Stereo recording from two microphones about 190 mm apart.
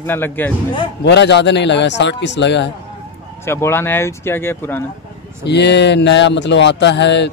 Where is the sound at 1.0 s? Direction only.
65° left (ahead or behind).